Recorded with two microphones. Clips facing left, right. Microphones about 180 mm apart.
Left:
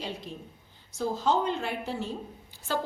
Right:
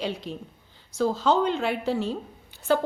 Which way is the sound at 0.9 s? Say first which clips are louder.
Right 4 dB; 80° right.